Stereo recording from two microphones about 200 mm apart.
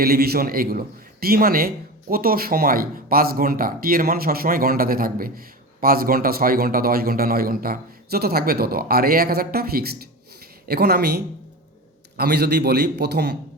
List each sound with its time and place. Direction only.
0.0 s a man's voice: 50° right (ahead or behind)